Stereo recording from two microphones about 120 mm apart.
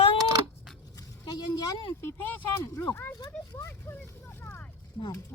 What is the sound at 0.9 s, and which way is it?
Speech, 30° left (ahead or behind).